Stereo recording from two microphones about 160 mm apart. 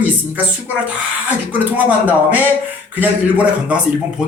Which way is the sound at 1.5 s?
10° right (ahead or behind).